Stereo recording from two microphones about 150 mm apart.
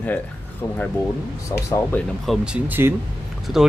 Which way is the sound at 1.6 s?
20° left (ahead or behind).